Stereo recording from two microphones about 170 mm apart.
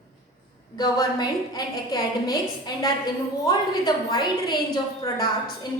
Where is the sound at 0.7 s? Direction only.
25° left (ahead or behind).